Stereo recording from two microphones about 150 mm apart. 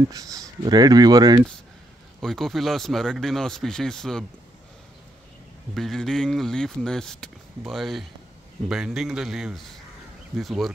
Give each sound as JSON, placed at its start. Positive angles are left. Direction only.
{"t": 0.1, "sound": "speech", "side_deg": -25}
{"t": 2.2, "sound": "speech", "side_deg": 0}
{"t": 5.8, "sound": "speech", "side_deg": 5}